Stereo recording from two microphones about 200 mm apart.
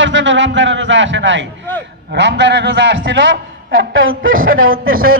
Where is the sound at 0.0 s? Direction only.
65° right (ahead or behind); by 4.4 s 80° right.